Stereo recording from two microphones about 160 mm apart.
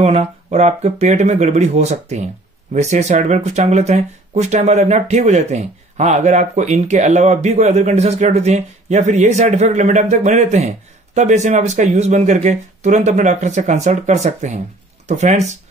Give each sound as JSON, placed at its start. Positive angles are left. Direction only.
{"t": 0.0, "sound": "speech", "side_deg": -40}